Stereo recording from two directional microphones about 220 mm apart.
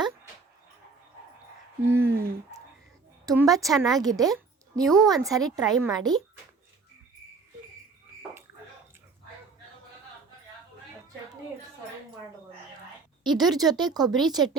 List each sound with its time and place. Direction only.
1.8 s a sound: 10° right (ahead or behind)
3.2 s a woman's voice: 15° right (ahead or behind)
4.8 s a woman's voice: centre (ahead or behind)
5.2 s a woman's voice: 15° right (ahead or behind)
13.2 s speech: 20° right (ahead or behind)